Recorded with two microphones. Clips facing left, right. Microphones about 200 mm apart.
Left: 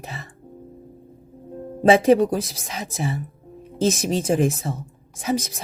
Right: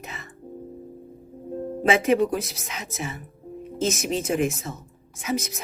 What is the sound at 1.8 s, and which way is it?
A woman's voice, 35° left (ahead or behind).